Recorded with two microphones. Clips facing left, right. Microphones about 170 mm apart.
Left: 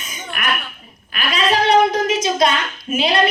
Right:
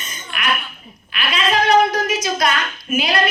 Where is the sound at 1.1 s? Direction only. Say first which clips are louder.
Left 1 dB; 35° left (ahead or behind).